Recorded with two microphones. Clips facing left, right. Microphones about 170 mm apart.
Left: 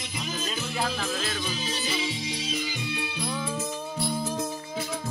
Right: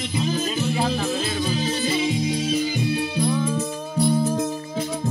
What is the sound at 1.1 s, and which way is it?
Music, 15° right (ahead or behind).